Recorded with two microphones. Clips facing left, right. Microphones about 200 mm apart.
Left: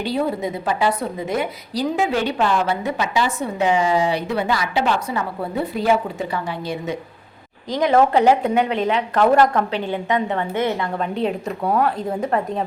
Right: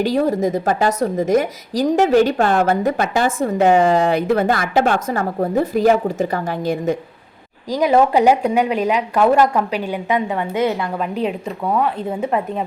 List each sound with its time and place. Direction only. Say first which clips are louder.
0.0 s a woman's voice: right 5 dB; 45° right (ahead or behind)
7.7 s a woman's voice: right 2 dB; 10° right (ahead or behind)
10.9 s a woman's voice: right 1 dB; 5° right (ahead or behind)